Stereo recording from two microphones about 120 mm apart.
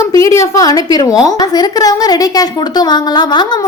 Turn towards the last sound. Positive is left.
turn(degrees=35)  # may be behind; listen again after turning